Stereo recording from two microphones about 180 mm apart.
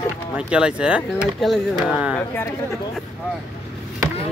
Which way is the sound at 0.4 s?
5° right (ahead or behind).